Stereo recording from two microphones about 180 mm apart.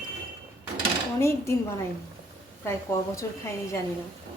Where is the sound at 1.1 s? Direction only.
15° left (ahead or behind).